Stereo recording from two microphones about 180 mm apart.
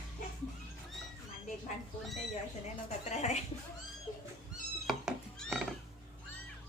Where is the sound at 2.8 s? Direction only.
40° left (ahead or behind).